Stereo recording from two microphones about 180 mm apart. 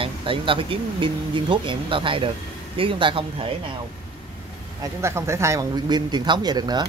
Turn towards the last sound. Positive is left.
turn(degrees=-20)  # may be behind; listen again after turning